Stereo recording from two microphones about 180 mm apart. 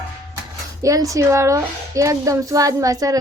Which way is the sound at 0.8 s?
20° right (ahead or behind).